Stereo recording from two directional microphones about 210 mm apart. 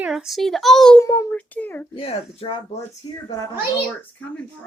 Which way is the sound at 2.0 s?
25° left (ahead or behind).